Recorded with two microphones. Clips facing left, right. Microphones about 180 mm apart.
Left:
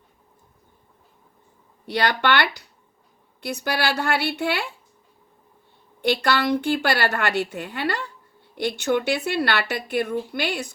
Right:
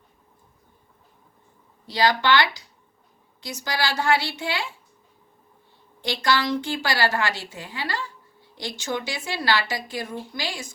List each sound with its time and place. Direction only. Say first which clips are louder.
1.9 s a woman's voice: right 1 dB; 65° left (ahead or behind)
6.0 s a woman's voice: left 3 dB; 60° left (ahead or behind)